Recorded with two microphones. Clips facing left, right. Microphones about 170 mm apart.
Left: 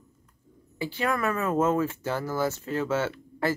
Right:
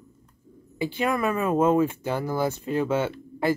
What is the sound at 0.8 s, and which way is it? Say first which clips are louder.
Speech: right 3 dB; 15° right (ahead or behind).